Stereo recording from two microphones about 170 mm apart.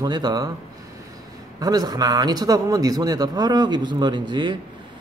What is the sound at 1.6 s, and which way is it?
A man's voice, 25° right (ahead or behind).